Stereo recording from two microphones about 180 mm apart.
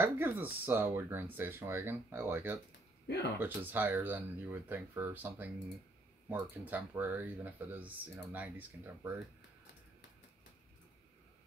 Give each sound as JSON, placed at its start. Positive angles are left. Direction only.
{"t": 0.0, "sound": "speech", "side_deg": -10}